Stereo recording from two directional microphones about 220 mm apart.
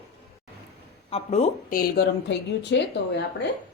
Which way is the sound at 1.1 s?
30° left (ahead or behind).